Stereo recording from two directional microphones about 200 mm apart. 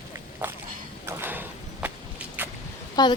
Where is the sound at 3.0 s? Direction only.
20° left (ahead or behind).